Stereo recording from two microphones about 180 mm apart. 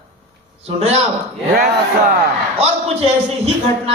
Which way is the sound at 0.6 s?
35° right (ahead or behind).